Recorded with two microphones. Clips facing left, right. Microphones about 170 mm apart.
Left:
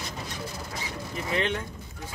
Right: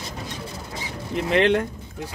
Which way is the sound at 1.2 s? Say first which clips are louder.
Right 10 dB; 75° right (ahead or behind).